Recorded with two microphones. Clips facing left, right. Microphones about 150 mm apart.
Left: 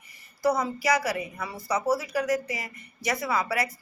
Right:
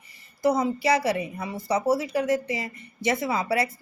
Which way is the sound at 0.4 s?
25° right (ahead or behind).